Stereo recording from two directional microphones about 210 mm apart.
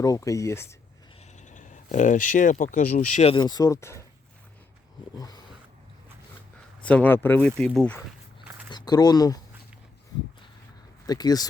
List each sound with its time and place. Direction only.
0.0 s speech: 15° left (ahead or behind)
1.4 s a sound: 35° left (ahead or behind)
2.7 s speech: 35° left (ahead or behind)
3.3 s speech: 20° left (ahead or behind)
5.1 s speech: 20° left (ahead or behind)
6.8 s speech: 5° left (ahead or behind)
8.7 s speech: 20° left (ahead or behind)
11.0 s speech: 20° left (ahead or behind)